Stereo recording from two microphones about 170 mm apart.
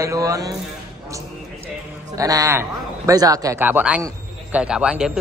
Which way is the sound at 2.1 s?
20° right (ahead or behind).